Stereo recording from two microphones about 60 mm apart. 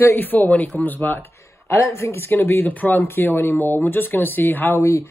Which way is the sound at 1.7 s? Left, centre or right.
Left.